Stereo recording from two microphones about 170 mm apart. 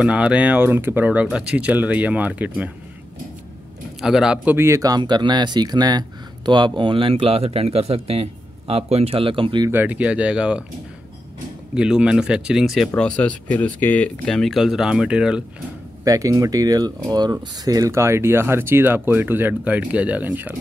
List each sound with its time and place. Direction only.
0.0 s speech: 5° right (ahead or behind)
4.0 s speech: 5° right (ahead or behind); by 9.7 s 30° right (ahead or behind)
9.7 s speech: 10° right (ahead or behind)
11.7 s speech: 5° right (ahead or behind)
16.0 s speech: 20° right (ahead or behind)